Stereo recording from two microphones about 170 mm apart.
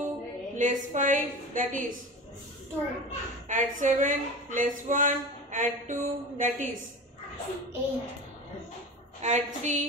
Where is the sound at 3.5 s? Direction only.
45° right (ahead or behind).